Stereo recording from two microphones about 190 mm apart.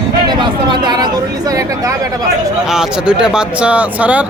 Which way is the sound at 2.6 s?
5° right (ahead or behind).